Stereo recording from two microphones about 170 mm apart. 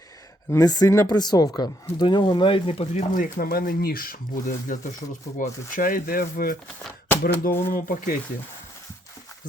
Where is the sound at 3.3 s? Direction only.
60° left (ahead or behind).